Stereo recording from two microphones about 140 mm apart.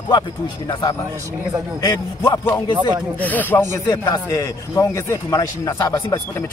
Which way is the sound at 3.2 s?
10° left (ahead or behind).